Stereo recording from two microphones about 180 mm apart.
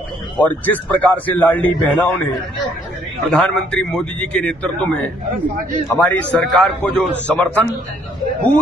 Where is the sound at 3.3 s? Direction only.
5° left (ahead or behind).